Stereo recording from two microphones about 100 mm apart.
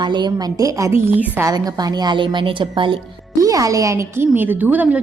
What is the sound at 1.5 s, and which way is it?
A woman's voice, 40° right (ahead or behind).